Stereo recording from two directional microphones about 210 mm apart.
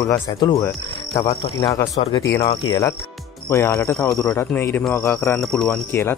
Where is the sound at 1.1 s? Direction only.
30° left (ahead or behind).